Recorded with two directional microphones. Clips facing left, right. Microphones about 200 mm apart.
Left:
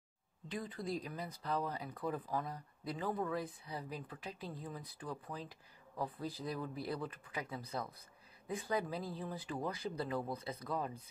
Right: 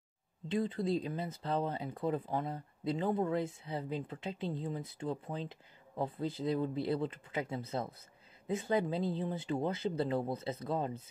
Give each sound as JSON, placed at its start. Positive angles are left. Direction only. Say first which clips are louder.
{"t": 0.5, "sound": "speech", "louder": "right 8 dB", "side_deg": -25}